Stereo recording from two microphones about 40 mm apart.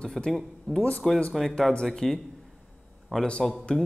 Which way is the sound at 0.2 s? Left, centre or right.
Centre.